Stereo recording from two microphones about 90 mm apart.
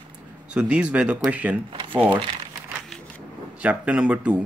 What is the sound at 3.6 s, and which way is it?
Speech, 15° right (ahead or behind).